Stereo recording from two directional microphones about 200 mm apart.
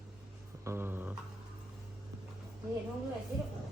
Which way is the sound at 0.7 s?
10° right (ahead or behind).